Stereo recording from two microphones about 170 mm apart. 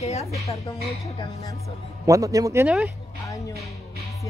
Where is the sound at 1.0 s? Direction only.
25° left (ahead or behind).